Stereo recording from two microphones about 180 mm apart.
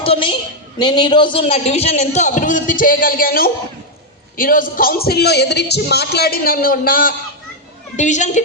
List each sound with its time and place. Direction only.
0.0 s a woman's voice: 30° left (ahead or behind); by 7.1 s 50° left (ahead or behind)
7.9 s a woman's voice: 40° left (ahead or behind)